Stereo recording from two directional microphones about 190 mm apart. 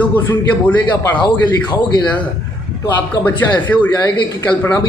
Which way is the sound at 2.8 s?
10° left (ahead or behind).